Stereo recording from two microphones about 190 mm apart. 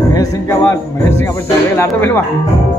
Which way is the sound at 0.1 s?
20° left (ahead or behind).